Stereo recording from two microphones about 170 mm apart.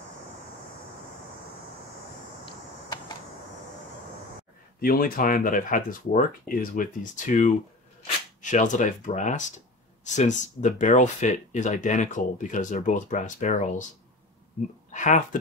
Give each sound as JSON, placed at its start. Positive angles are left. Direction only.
{"t": 4.7, "sound": "speech", "side_deg": 60}
{"t": 14.9, "sound": "speech", "side_deg": 45}